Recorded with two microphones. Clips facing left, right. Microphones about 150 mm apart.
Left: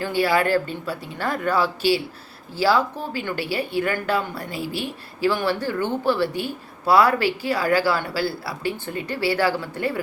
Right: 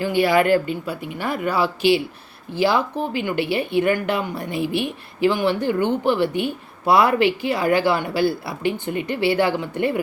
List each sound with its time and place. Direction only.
0.0 s speech: 15° right (ahead or behind)